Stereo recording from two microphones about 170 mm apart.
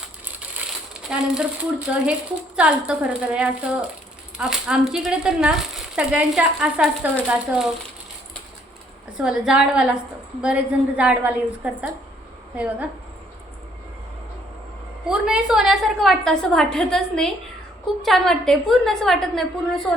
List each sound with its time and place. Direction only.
0.9 s speech: 5° right (ahead or behind)
2.6 s speech: 5° right (ahead or behind)
9.1 s a woman's voice: 5° right (ahead or behind)
15.1 s speech: 5° right (ahead or behind)